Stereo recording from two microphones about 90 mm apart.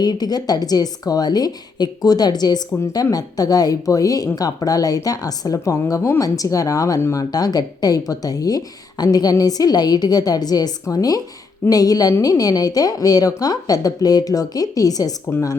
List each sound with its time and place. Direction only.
0.0 s a woman's voice: 50° left (ahead or behind)
15.3 s speech: 35° left (ahead or behind)